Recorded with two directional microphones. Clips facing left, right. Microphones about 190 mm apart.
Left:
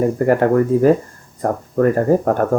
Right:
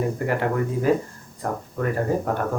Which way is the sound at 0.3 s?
45° left (ahead or behind).